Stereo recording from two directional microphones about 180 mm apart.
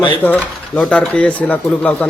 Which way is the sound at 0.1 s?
10° left (ahead or behind).